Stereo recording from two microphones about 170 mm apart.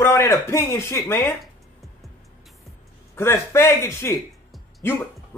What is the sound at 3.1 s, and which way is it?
A man's voice, 15° left (ahead or behind).